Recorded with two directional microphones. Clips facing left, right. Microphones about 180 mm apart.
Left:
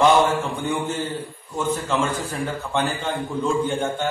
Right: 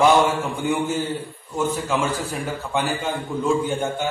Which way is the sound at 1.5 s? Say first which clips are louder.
Right 1 dB; 10° right (ahead or behind).